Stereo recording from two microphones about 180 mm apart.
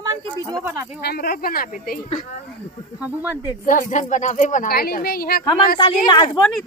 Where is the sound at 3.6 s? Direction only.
45° left (ahead or behind).